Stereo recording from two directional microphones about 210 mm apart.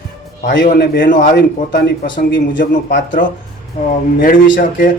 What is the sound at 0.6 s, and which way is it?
Speech, 50° left (ahead or behind).